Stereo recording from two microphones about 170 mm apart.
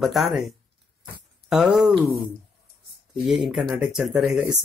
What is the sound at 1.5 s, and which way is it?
Speech, 5° right (ahead or behind).